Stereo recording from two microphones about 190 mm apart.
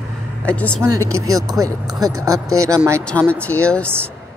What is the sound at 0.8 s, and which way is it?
Speech, 15° right (ahead or behind).